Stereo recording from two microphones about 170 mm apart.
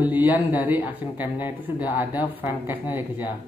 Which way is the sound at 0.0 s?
10° right (ahead or behind).